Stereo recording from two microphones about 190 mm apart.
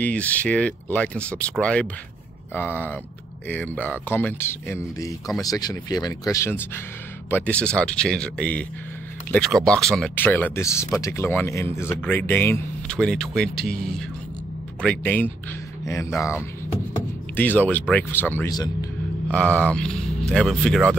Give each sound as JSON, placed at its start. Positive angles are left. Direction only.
{"t": 0.0, "sound": "speech", "side_deg": 10}
{"t": 14.8, "sound": "speech", "side_deg": 10}
{"t": 19.3, "sound": "speech", "side_deg": 5}